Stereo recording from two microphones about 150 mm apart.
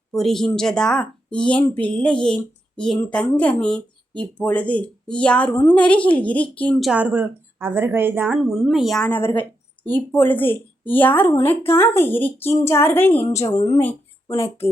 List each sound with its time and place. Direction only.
0.1 s a woman's voice: centre (ahead or behind); by 14.7 s 15° left (ahead or behind)